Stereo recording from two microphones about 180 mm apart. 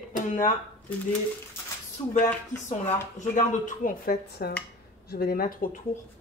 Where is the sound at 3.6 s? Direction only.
50° left (ahead or behind).